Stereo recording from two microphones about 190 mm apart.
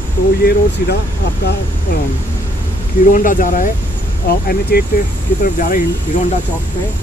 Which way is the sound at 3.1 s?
45° left (ahead or behind).